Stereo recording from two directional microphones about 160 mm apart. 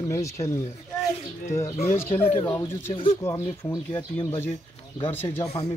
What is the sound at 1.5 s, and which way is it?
Speech, 15° left (ahead or behind).